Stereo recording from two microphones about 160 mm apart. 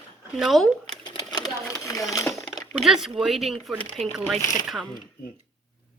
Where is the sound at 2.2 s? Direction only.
Centre (ahead or behind).